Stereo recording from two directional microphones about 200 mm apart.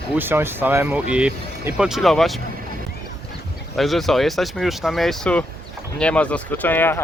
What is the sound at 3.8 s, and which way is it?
Speech, centre (ahead or behind).